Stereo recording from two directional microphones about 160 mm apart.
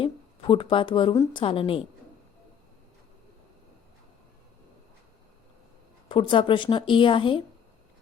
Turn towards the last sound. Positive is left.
turn(degrees=35)  # may be behind; listen again after turning